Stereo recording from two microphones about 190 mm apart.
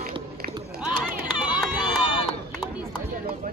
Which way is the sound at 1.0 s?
5° right (ahead or behind).